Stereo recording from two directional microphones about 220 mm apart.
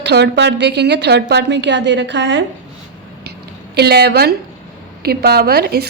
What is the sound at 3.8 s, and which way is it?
A woman's voice, 50° right (ahead or behind).